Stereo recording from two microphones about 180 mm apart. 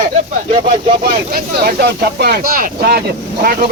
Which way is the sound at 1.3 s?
60° right (ahead or behind).